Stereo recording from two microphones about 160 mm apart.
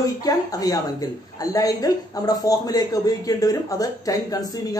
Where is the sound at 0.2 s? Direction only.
25° left (ahead or behind).